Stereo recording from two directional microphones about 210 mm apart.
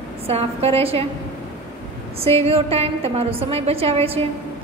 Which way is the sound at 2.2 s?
30° right (ahead or behind).